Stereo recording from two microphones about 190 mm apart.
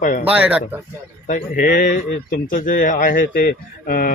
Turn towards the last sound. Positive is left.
turn(degrees=50)  # may be behind; listen again after turning